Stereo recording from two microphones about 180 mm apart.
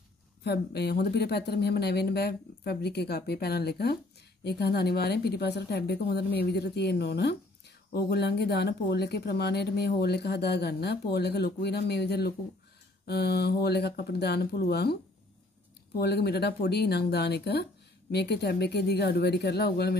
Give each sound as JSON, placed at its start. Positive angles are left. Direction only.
{"t": 0.4, "sound": "speech", "side_deg": 65}
{"t": 16.0, "sound": "speech", "side_deg": 65}